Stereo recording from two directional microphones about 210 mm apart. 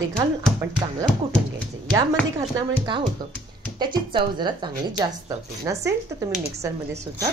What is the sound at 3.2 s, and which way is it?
A woman's voice, 20° right (ahead or behind).